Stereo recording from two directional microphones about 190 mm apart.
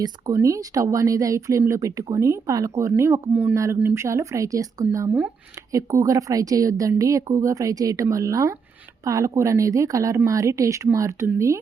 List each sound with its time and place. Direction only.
0.0 s speech: 20° right (ahead or behind)